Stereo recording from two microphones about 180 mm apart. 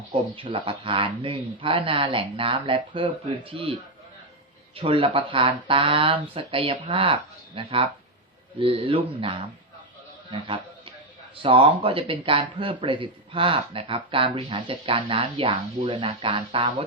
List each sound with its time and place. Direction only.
0.3 s speech: 30° right (ahead or behind)
10.3 s a sound: 30° right (ahead or behind)
11.4 s speech: 30° right (ahead or behind)